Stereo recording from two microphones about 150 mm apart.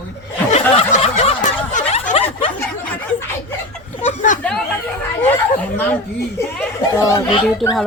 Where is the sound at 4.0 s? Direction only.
55° left (ahead or behind).